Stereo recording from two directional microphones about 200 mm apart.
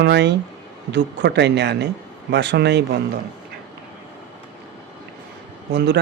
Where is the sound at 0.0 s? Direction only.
60° right (ahead or behind).